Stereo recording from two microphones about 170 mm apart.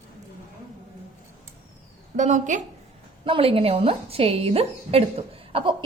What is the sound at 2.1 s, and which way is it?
Speech, 45° right (ahead or behind).